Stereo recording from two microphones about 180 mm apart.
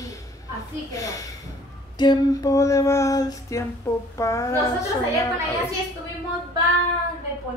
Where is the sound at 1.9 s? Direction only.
20° left (ahead or behind).